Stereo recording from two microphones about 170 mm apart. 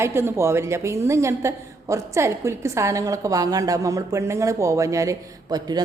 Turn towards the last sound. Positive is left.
turn(degrees=-25)  # may be behind; listen again after turning